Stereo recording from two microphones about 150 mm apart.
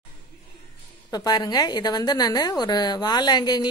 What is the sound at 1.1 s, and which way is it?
A woman's voice, 25° left (ahead or behind).